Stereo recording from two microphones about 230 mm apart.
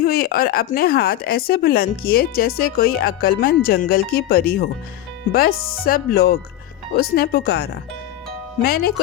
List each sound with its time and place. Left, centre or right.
0.0 s a woman's voice: left